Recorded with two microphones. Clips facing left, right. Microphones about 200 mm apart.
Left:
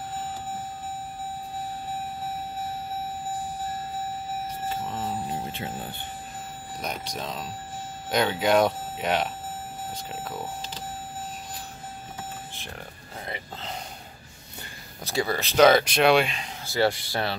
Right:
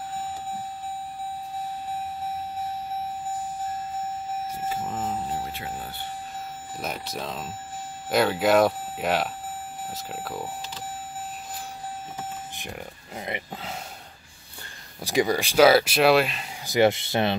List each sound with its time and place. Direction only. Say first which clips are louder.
4.6 s a sound: right 2 dB; 5° right (ahead or behind)
5.5 s speech: even; 25° left (ahead or behind)
6.8 s speech: right 1 dB; 5° right (ahead or behind)
13.2 s speech: right 3 dB; 20° right (ahead or behind)
15.0 s speech: right 4 dB; 15° right (ahead or behind)
16.6 s speech: right 4 dB; 20° right (ahead or behind)